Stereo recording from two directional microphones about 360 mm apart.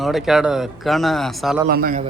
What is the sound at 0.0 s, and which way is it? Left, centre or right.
Speech, centre.